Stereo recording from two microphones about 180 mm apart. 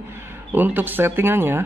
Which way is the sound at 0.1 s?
10° right (ahead or behind).